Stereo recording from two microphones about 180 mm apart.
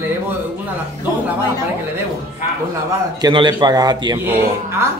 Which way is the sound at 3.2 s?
25° right (ahead or behind).